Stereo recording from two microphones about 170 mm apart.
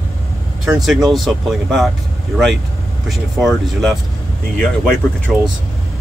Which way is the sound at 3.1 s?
Centre (ahead or behind).